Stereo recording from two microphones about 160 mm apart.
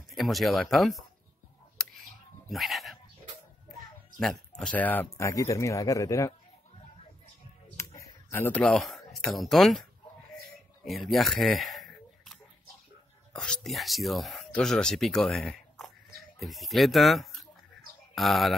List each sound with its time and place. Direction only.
0.1 s speech: centre (ahead or behind)
2.5 s speech: centre (ahead or behind)
4.2 s speech: 5° left (ahead or behind); by 6.3 s 20° left (ahead or behind)
7.7 s a sound: 20° left (ahead or behind); by 9.8 s centre (ahead or behind)
10.9 s a sound: centre (ahead or behind)
13.3 s speech: 5° left (ahead or behind)